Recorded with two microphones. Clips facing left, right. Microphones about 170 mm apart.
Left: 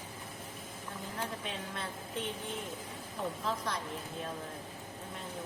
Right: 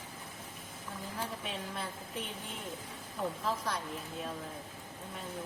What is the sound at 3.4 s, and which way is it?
Speech, 5° right (ahead or behind).